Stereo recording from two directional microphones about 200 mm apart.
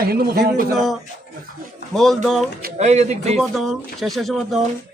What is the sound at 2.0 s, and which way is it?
Speech, centre (ahead or behind).